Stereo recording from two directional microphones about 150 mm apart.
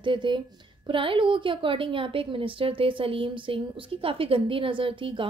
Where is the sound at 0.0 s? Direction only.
30° right (ahead or behind).